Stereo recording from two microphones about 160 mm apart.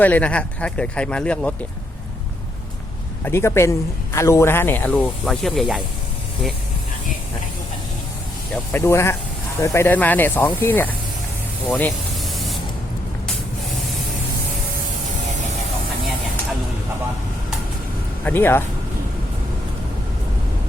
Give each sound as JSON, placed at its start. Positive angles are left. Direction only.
{"t": 0.0, "sound": "speech", "side_deg": 10}
{"t": 3.2, "sound": "speech", "side_deg": 15}
{"t": 8.7, "sound": "speech", "side_deg": 15}
{"t": 11.7, "sound": "spray", "side_deg": 0}
{"t": 18.3, "sound": "speech", "side_deg": 15}